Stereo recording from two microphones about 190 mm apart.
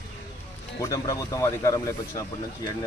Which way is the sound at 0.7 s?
15° left (ahead or behind).